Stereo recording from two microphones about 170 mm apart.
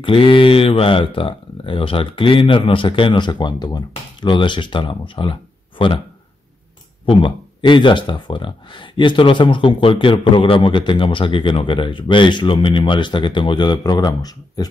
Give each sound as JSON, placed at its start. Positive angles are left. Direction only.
{"t": 0.0, "sound": "speech", "side_deg": 30}
{"t": 7.1, "sound": "speech", "side_deg": 30}